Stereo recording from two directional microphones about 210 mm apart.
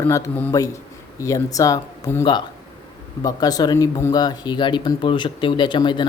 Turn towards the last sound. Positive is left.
turn(degrees=20)  # may be behind; listen again after turning